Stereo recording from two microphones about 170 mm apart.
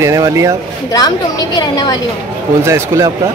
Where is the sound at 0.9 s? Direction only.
20° left (ahead or behind).